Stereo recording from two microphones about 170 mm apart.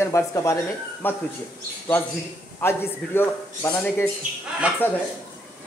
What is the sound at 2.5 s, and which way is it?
Speech, 15° left (ahead or behind).